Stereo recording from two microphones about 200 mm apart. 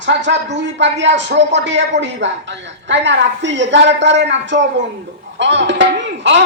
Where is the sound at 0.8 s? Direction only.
65° right (ahead or behind).